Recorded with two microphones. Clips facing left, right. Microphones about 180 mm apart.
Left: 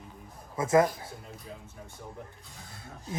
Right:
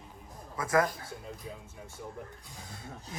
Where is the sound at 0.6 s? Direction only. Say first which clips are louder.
Left 4 dB; 25° left (ahead or behind).